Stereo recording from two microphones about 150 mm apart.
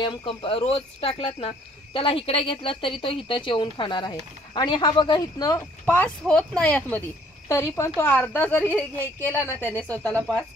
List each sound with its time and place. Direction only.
0.0 s a woman's voice: 35° left (ahead or behind); by 7.0 s 10° left (ahead or behind)
7.4 s a woman's voice: 20° left (ahead or behind)